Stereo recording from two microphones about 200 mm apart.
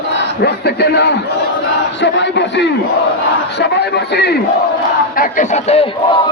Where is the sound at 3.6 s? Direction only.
55° left (ahead or behind).